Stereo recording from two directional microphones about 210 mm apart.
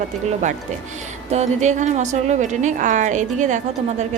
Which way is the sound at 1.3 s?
35° right (ahead or behind).